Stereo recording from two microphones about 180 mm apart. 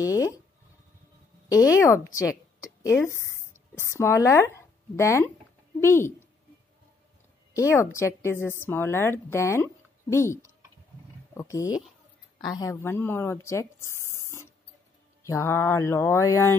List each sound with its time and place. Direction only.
0.0 s a sound: 20° left (ahead or behind)
1.5 s a woman's voice: 20° left (ahead or behind)
7.5 s a woman's voice: 15° left (ahead or behind)